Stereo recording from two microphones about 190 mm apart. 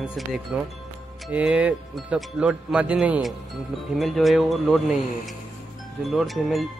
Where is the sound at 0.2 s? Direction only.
Centre (ahead or behind).